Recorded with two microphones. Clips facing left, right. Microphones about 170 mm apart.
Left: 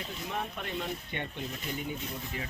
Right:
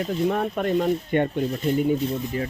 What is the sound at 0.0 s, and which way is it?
Speech, 55° right (ahead or behind).